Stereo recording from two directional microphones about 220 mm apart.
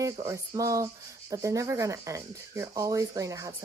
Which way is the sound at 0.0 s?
15° right (ahead or behind).